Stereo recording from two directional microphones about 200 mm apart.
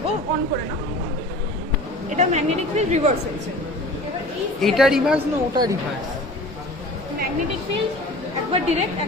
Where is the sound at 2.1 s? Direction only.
35° right (ahead or behind).